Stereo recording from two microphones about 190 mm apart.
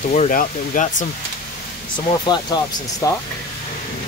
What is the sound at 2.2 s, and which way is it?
Speech, 20° left (ahead or behind).